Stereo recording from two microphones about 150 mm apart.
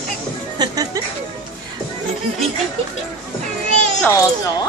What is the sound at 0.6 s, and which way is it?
Music, 25° right (ahead or behind).